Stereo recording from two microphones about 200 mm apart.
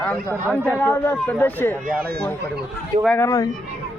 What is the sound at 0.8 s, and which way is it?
Speech, 10° left (ahead or behind).